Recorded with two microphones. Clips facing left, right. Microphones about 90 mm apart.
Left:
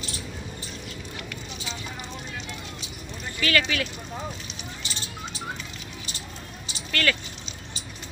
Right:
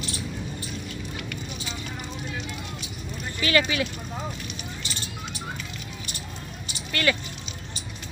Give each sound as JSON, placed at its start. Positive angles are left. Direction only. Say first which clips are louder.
{"t": 3.3, "sound": "speech", "louder": "right 1 dB", "side_deg": -25}
{"t": 6.9, "sound": "speech", "louder": "right 1 dB", "side_deg": -20}